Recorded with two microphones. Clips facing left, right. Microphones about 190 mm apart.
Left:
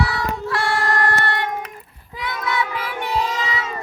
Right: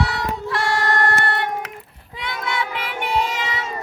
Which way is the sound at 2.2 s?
25° right (ahead or behind).